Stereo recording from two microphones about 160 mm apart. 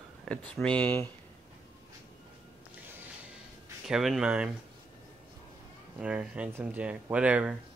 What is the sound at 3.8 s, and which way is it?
Speech, centre (ahead or behind).